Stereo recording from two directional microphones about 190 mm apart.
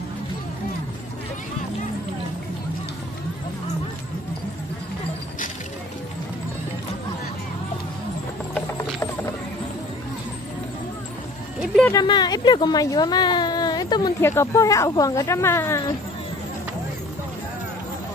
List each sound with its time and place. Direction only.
8.5 s horse: 15° left (ahead or behind)
11.6 s a sound: centre (ahead or behind)
11.9 s speech: 20° left (ahead or behind)